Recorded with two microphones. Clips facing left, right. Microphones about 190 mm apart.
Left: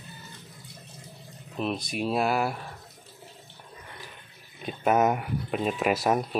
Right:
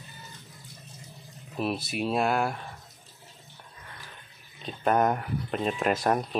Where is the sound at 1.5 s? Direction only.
5° right (ahead or behind).